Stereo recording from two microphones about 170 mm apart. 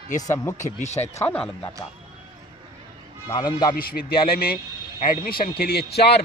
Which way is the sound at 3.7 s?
60° left (ahead or behind).